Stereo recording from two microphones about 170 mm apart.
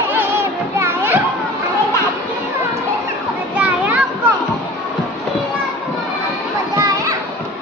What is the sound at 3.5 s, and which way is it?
Children playing, 5° right (ahead or behind).